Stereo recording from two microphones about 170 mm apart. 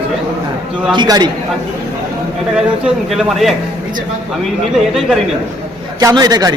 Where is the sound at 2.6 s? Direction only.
5° right (ahead or behind).